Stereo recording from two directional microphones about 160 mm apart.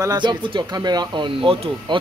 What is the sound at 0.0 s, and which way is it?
Speech, 25° right (ahead or behind).